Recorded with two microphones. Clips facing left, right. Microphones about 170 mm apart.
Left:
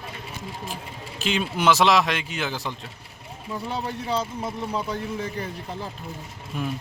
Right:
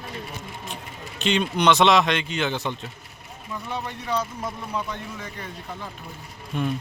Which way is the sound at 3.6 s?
30° left (ahead or behind).